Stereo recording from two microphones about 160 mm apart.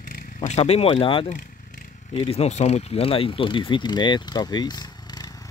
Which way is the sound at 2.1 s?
40° left (ahead or behind).